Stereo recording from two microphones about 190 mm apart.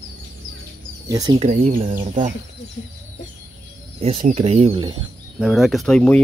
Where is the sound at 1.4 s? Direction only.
35° right (ahead or behind).